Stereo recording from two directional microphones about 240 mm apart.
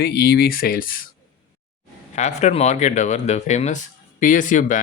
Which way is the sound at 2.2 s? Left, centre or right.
Left.